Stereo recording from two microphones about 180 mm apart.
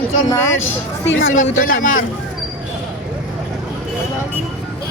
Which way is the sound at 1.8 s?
45° left (ahead or behind).